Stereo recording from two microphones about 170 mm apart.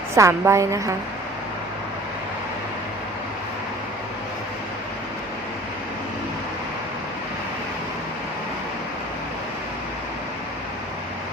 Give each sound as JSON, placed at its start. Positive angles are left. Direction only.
{"t": 0.2, "sound": "a woman's voice", "side_deg": -15}